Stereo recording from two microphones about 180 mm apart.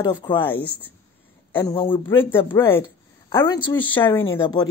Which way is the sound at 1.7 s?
30° left (ahead or behind).